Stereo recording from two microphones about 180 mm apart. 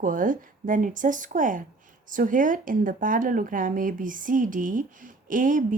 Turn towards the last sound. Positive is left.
turn(degrees=-45)  # may be behind; listen again after turning